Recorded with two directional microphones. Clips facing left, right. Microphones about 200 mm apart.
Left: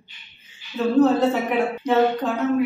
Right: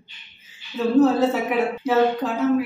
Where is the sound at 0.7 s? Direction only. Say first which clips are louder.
Even; centre (ahead or behind).